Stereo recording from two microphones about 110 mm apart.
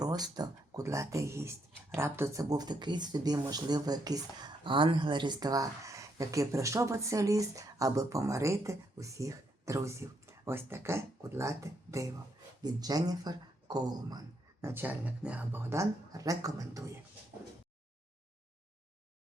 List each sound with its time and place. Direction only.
0.0 s speech: 40° right (ahead or behind)
4.6 s speech: 50° right (ahead or behind)
14.6 s speech: 20° right (ahead or behind)
15.7 s speech: 30° right (ahead or behind)